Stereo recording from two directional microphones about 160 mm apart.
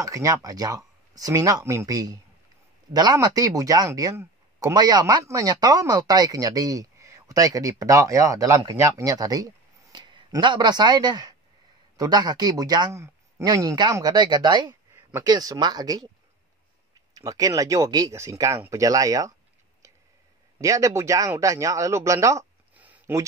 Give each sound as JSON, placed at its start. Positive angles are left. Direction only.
{"t": 0.0, "sound": "speech", "side_deg": -20}
{"t": 17.1, "sound": "speech", "side_deg": -20}
{"t": 20.6, "sound": "speech", "side_deg": -20}
{"t": 22.8, "sound": "a sound", "side_deg": -10}